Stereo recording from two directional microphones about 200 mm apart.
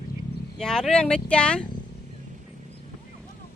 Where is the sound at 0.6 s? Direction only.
5° left (ahead or behind).